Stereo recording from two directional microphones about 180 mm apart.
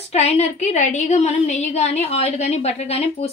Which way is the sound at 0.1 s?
35° left (ahead or behind).